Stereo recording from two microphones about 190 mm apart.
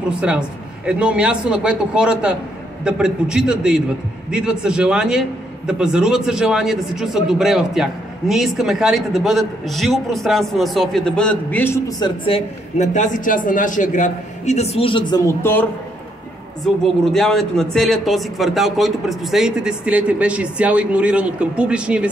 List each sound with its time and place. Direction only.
0.1 s speech: 5° right (ahead or behind)
12.0 s a man's voice: 30° left (ahead or behind); by 15.6 s 15° left (ahead or behind)
16.6 s speech: centre (ahead or behind)